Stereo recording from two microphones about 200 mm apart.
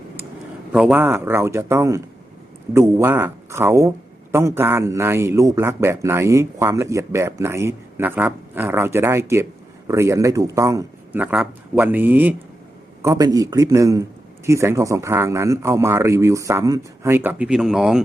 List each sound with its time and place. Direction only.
0.7 s speech: 5° right (ahead or behind)